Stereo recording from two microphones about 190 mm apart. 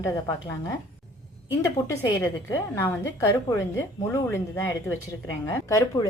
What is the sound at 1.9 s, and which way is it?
A woman's voice, 15° left (ahead or behind).